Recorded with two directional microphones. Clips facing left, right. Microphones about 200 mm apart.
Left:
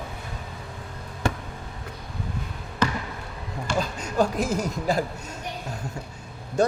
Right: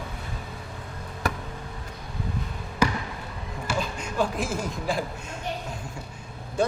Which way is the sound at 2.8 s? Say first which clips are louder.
Right 1 dB; 10° right (ahead or behind).